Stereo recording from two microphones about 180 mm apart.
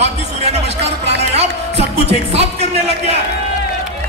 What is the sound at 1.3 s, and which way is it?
A man's voice, 35° right (ahead or behind).